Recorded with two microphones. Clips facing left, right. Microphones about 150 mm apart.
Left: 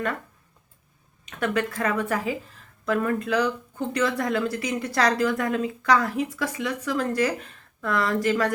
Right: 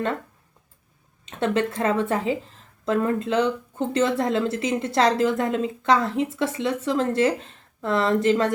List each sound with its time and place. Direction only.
1.2 s a woman's voice: 25° right (ahead or behind)